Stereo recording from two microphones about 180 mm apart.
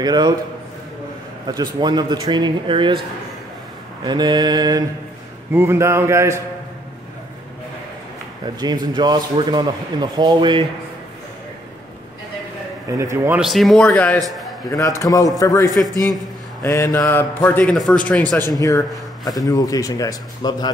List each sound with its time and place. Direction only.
0.0 s a man's voice: 20° right (ahead or behind)
1.5 s a man's voice: 25° right (ahead or behind)
4.0 s a man's voice: 25° right (ahead or behind)
8.8 s a man's voice: 25° right (ahead or behind)
12.9 s a man's voice: 15° right (ahead or behind)
13.4 s a man's voice: centre (ahead or behind)
18.5 s a man's voice: 20° left (ahead or behind)